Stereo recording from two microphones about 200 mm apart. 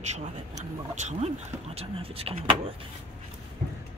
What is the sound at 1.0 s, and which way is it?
Speech, 35° right (ahead or behind).